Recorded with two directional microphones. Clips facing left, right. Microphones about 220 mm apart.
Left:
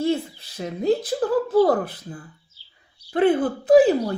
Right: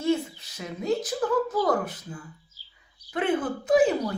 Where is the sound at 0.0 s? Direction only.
30° left (ahead or behind).